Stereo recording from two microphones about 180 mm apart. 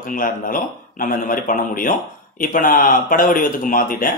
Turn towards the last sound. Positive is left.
turn(degrees=50)  # may be behind; listen again after turning